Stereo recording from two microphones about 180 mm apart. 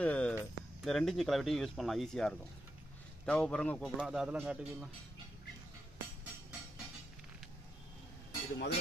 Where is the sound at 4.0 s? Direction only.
5° right (ahead or behind).